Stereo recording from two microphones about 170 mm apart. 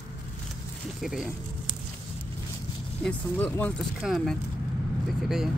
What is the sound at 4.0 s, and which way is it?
Speech, centre (ahead or behind).